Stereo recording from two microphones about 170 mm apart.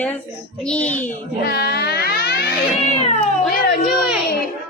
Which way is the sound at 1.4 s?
70° left (ahead or behind).